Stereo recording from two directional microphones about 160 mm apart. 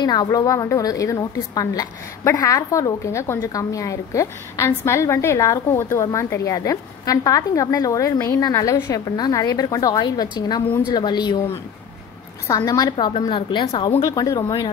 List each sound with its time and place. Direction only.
0.0 s a woman's voice: 25° left (ahead or behind)
14.0 s a woman's voice: 20° left (ahead or behind)